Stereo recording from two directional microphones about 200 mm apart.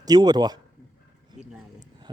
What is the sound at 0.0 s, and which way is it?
Speech, 20° right (ahead or behind).